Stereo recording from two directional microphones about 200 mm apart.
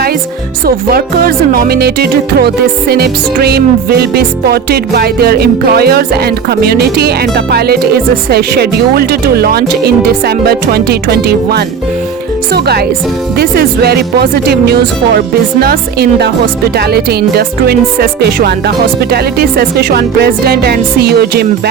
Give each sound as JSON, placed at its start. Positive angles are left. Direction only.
{"t": 0.9, "sound": "music", "side_deg": -50}